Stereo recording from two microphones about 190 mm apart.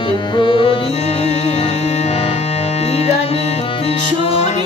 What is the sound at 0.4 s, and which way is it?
Music, 25° left (ahead or behind).